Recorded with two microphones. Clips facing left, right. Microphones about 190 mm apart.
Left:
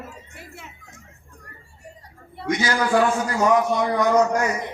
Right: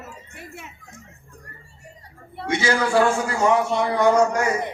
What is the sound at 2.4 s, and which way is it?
A man's voice, 25° right (ahead or behind).